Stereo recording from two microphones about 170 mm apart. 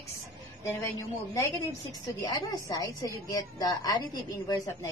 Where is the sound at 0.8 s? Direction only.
15° left (ahead or behind).